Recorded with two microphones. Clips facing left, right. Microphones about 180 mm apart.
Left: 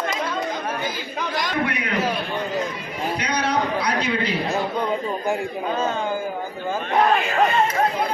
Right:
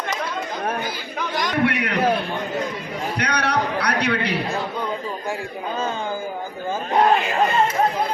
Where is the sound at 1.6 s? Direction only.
75° right (ahead or behind).